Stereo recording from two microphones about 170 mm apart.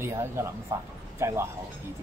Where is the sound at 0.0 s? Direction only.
15° right (ahead or behind).